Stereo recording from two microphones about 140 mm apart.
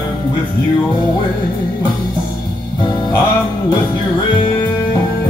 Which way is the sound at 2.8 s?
30° left (ahead or behind).